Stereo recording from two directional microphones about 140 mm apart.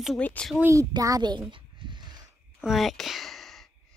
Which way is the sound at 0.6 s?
20° right (ahead or behind).